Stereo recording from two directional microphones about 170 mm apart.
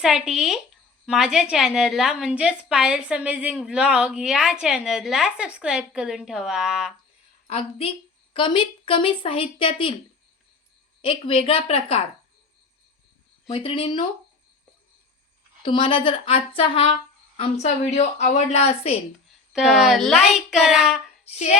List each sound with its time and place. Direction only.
0.0 s a woman's voice: centre (ahead or behind)
7.4 s a woman's voice: 35° left (ahead or behind)
11.0 s a woman's voice: 30° left (ahead or behind)
13.5 s a woman's voice: 35° left (ahead or behind)
15.6 s a woman's voice: 30° left (ahead or behind)
19.5 s a woman's voice: 5° right (ahead or behind)